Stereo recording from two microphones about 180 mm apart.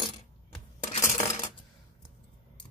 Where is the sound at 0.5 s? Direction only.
40° left (ahead or behind).